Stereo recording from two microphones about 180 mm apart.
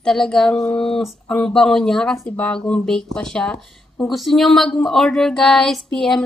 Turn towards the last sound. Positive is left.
turn(degrees=0)  # may be behind; listen again after turning